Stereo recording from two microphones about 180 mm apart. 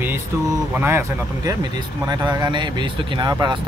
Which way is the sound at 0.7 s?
15° right (ahead or behind).